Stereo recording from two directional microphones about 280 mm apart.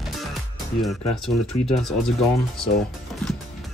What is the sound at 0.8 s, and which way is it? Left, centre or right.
Speech, centre.